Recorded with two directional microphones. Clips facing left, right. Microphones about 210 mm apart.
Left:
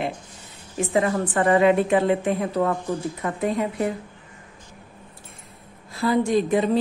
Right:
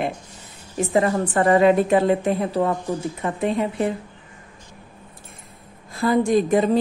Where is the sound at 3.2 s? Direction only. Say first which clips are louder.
Right 3 dB; 25° right (ahead or behind).